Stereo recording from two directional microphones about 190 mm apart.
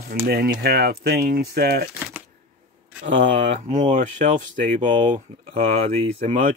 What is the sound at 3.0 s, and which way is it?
Speech, 40° right (ahead or behind).